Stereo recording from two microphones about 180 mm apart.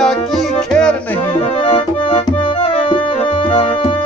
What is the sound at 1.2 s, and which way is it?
Music, 30° left (ahead or behind).